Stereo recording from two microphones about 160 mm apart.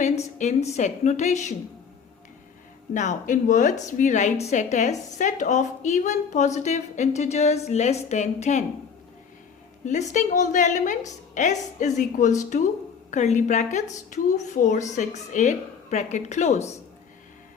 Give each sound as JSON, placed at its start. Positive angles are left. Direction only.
{"t": 0.0, "sound": "a woman's voice", "side_deg": 45}
{"t": 2.9, "sound": "a woman's voice", "side_deg": 50}
{"t": 9.8, "sound": "a woman's voice", "side_deg": 50}